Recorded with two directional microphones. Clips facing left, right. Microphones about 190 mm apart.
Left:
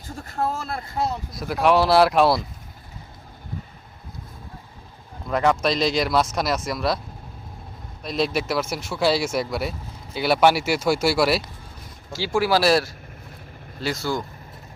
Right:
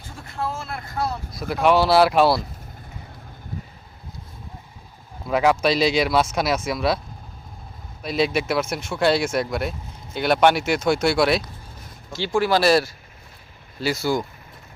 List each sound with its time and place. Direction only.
0.1 s speech: 40° left (ahead or behind)
0.9 s speech: 20° left (ahead or behind)
1.3 s speech: centre (ahead or behind)
5.3 s speech: 5° right (ahead or behind)
8.0 s speech: centre (ahead or behind)